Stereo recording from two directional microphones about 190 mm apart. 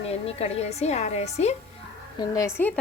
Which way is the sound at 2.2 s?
15° left (ahead or behind).